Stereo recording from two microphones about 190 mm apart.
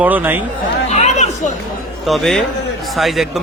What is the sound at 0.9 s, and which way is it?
Chatter, 35° left (ahead or behind).